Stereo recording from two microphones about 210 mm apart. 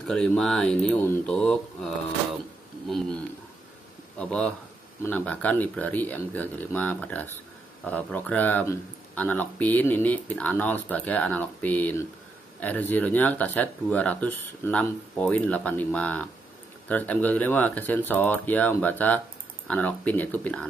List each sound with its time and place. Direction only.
0.0 s speech: 5° left (ahead or behind)
4.2 s speech: 5° left (ahead or behind)